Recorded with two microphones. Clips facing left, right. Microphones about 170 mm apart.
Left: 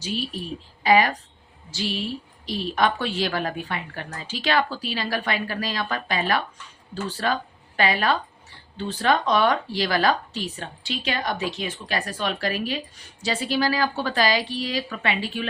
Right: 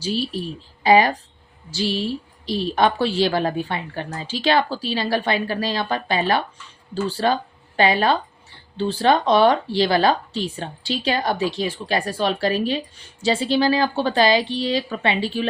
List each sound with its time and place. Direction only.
0.0 s a woman's voice: 30° right (ahead or behind)